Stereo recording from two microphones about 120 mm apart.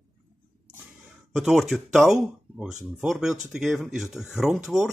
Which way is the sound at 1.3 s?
Centre (ahead or behind).